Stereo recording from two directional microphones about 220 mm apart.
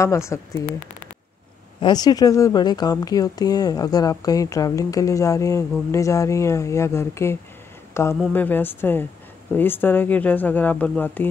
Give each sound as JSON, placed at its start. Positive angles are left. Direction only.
{"t": 0.0, "sound": "a woman's voice", "side_deg": 15}
{"t": 1.8, "sound": "a woman's voice", "side_deg": 20}